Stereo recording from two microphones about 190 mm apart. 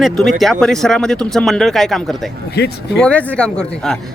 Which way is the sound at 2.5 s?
60° left (ahead or behind).